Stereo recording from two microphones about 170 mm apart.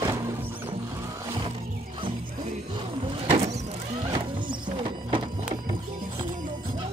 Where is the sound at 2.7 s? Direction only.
30° right (ahead or behind).